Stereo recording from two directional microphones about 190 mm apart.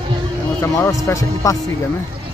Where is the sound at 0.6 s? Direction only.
10° left (ahead or behind).